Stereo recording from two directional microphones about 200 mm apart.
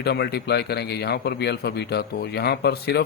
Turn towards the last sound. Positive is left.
turn(degrees=55)  # may be behind; listen again after turning